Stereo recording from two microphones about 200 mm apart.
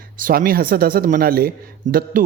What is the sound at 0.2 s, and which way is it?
Speech, 45° right (ahead or behind).